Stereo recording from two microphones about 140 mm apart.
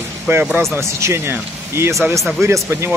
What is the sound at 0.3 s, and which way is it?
Speech, 15° right (ahead or behind).